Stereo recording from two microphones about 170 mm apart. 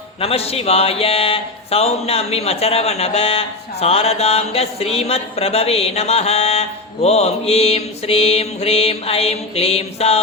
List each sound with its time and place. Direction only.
0.2 s speech: 35° left (ahead or behind)